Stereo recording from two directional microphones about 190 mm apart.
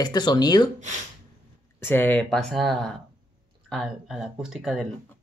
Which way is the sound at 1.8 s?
10° left (ahead or behind).